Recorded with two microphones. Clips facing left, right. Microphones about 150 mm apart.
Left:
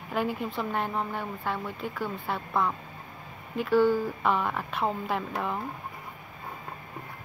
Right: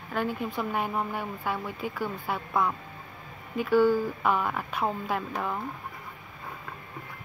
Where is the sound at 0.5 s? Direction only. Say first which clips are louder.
Right 2 dB; 5° right (ahead or behind).